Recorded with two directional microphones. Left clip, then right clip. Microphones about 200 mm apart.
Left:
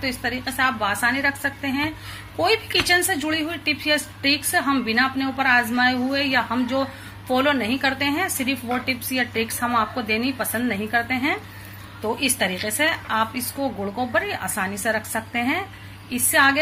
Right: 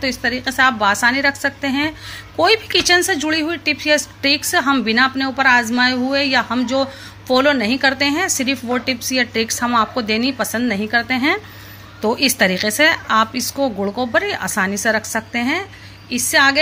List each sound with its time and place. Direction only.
0.0 s a woman's voice: 45° right (ahead or behind)